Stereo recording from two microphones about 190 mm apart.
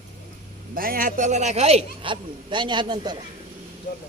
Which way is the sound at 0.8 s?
50° right (ahead or behind).